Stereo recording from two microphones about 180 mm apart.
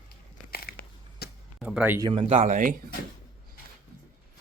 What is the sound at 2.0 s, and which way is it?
Speech, 25° right (ahead or behind).